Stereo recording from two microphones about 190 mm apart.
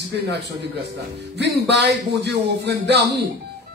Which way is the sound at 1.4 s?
65° right (ahead or behind).